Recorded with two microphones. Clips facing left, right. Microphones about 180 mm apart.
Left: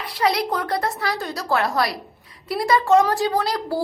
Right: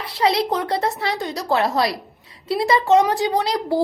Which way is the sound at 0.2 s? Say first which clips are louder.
Right 2 dB; 25° right (ahead or behind).